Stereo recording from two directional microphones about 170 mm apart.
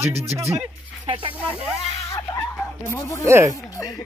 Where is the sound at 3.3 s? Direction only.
15° right (ahead or behind).